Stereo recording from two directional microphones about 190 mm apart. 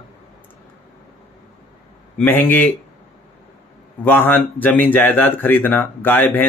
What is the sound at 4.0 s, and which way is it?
Speech, 10° left (ahead or behind).